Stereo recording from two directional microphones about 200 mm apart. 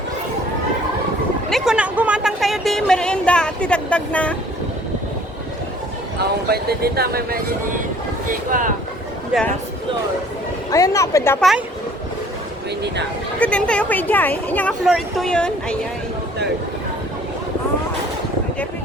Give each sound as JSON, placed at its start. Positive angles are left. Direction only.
{"t": 1.5, "sound": "a sound", "side_deg": 0}
{"t": 6.1, "sound": "speech", "side_deg": -50}
{"t": 10.7, "sound": "speech", "side_deg": 15}
{"t": 13.4, "sound": "a woman's voice", "side_deg": 5}